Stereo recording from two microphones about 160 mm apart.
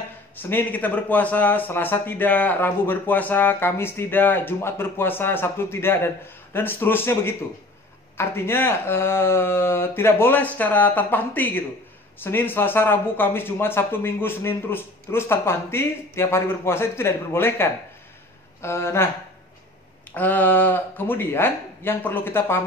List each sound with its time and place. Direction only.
0.4 s speech: 15° left (ahead or behind)
20.1 s speech: 10° left (ahead or behind)